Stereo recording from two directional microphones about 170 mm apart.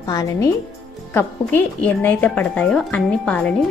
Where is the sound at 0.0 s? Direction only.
20° left (ahead or behind).